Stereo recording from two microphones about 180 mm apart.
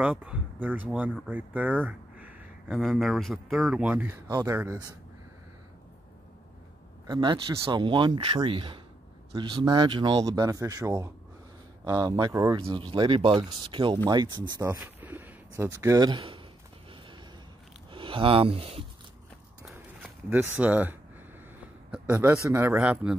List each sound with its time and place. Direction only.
0.0 s speech: 10° right (ahead or behind)
1.3 s a sound: 10° right (ahead or behind)
2.8 s speech: centre (ahead or behind)
7.1 s speech: 25° right (ahead or behind)
14.8 s speech: 10° right (ahead or behind); by 16.4 s 30° right (ahead or behind)
17.9 s speech: 30° right (ahead or behind)
19.7 s a sound: 10° right (ahead or behind)
21.9 s speech: 10° right (ahead or behind)